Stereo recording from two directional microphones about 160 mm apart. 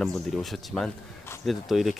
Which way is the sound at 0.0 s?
Centre (ahead or behind).